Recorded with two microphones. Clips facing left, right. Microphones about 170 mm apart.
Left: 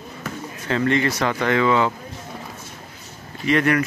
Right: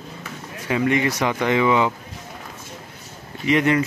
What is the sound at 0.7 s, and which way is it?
Speech, 15° right (ahead or behind).